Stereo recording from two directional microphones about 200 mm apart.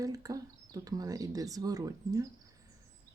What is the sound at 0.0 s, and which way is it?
Speech, 15° right (ahead or behind).